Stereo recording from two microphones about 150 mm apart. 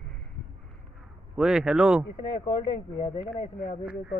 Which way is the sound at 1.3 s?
5° right (ahead or behind).